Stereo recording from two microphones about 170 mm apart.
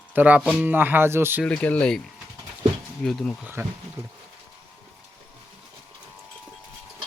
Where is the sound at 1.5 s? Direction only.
5° left (ahead or behind).